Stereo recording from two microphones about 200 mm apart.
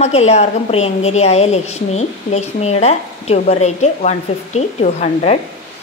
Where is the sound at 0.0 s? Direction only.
35° left (ahead or behind).